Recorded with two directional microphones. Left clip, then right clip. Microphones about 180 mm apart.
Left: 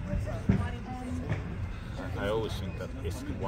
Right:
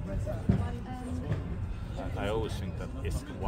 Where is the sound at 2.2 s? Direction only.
Centre (ahead or behind).